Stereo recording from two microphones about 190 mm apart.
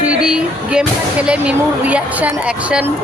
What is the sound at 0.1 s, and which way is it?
Speech, 5° right (ahead or behind).